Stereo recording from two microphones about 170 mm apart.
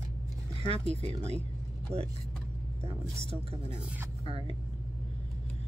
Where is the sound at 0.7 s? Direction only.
35° right (ahead or behind).